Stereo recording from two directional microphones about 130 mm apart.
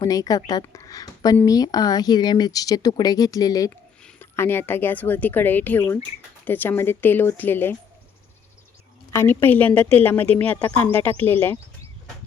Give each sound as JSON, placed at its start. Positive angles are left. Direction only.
{"t": 0.0, "sound": "a woman's voice", "side_deg": 25}
{"t": 3.7, "sound": "speech", "side_deg": 15}
{"t": 9.1, "sound": "speech", "side_deg": 15}